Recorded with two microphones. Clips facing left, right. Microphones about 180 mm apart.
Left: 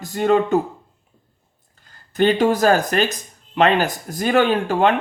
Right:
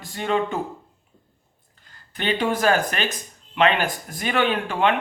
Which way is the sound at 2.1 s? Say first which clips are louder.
Left 7 dB; 45° left (ahead or behind).